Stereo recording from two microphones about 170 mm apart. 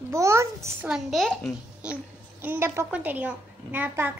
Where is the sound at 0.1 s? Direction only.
15° right (ahead or behind).